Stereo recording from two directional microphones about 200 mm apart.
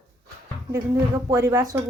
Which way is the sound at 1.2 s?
15° right (ahead or behind).